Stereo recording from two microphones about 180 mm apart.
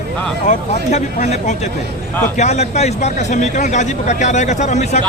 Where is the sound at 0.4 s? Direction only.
40° left (ahead or behind).